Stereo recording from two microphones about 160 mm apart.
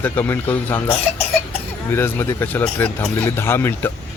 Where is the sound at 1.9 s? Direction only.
15° left (ahead or behind).